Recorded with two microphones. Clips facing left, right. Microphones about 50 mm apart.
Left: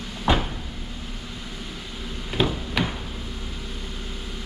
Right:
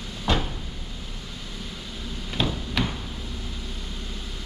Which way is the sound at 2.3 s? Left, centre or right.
Centre.